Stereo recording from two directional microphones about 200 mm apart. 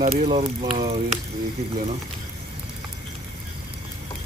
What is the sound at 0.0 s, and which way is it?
Speech, 35° right (ahead or behind).